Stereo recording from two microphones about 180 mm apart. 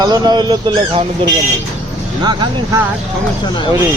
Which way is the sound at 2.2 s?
25° right (ahead or behind).